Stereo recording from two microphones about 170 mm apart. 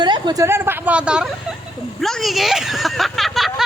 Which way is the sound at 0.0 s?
25° right (ahead or behind).